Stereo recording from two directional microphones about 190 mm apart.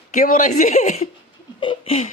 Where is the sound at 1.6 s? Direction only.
30° left (ahead or behind).